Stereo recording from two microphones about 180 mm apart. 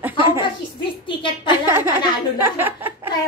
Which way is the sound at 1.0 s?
25° left (ahead or behind).